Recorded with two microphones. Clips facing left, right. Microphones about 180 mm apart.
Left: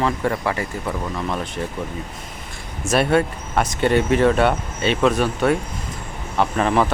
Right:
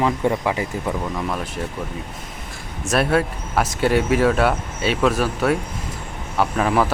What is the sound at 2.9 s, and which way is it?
Speech, centre (ahead or behind).